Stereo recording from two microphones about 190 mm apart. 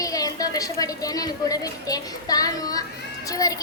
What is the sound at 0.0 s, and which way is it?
Speech, 20° left (ahead or behind).